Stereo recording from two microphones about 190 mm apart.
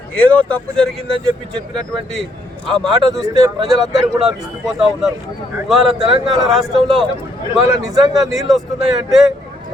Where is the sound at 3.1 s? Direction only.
20° right (ahead or behind).